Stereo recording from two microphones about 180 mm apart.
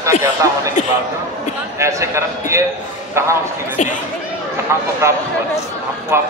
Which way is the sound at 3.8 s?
40° left (ahead or behind).